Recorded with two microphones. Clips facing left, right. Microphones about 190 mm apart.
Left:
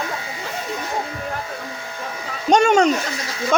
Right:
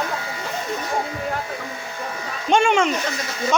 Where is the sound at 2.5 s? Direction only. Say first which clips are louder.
Left 3 dB; 40° left (ahead or behind).